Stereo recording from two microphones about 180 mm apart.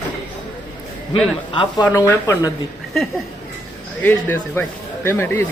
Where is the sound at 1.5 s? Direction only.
20° left (ahead or behind).